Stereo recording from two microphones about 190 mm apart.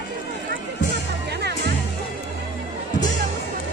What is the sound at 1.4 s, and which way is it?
Music, 60° right (ahead or behind).